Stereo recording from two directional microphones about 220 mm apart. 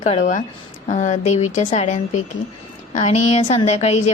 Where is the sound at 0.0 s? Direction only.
30° left (ahead or behind).